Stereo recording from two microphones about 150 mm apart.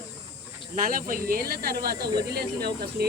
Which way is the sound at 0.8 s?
70° right (ahead or behind).